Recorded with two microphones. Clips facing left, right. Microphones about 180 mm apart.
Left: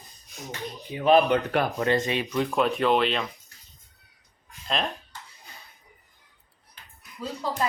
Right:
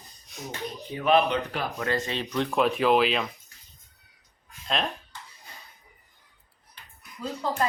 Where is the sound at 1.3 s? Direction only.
60° left (ahead or behind).